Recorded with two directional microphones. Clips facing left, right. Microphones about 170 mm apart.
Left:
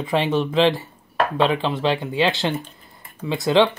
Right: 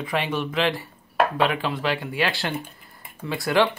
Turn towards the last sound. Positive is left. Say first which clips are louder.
# left 5 dB
turn(degrees=20)  # may be behind; listen again after turning